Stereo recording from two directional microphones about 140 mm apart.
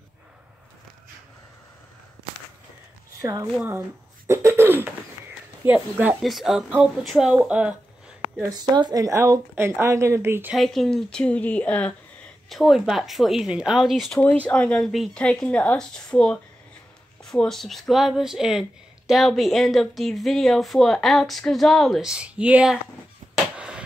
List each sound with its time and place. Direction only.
3.2 s speech: 25° right (ahead or behind)
4.3 s cough: 20° right (ahead or behind)
6.2 s speech: centre (ahead or behind)
7.3 s cough: 10° right (ahead or behind)
8.5 s speech: 30° right (ahead or behind)
10.5 s a woman's voice: centre (ahead or behind)
23.3 s a sound: 5° right (ahead or behind)